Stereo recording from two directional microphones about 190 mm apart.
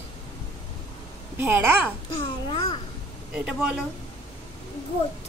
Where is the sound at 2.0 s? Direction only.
25° left (ahead or behind).